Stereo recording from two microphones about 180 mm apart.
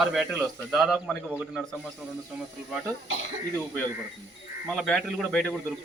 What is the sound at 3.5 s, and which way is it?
A man's voice, 10° left (ahead or behind).